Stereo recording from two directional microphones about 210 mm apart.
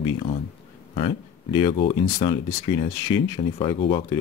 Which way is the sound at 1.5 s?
25° left (ahead or behind).